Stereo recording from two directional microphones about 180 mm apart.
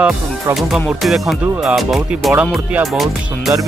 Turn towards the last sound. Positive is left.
turn(degrees=0)  # may be behind; listen again after turning